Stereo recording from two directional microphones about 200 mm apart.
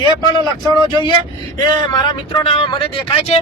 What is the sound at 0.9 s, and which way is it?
Speech, 20° left (ahead or behind).